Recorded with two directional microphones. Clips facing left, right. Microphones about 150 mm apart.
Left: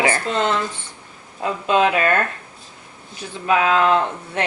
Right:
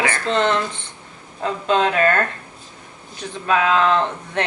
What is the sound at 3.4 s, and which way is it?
Speech, 15° left (ahead or behind).